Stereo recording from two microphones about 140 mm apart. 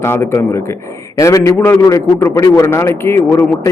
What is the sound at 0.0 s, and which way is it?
A man's voice, 15° left (ahead or behind).